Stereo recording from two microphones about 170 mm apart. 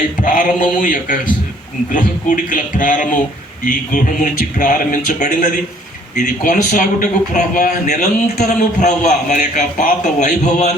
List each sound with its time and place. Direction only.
0.2 s a man's voice: 50° left (ahead or behind)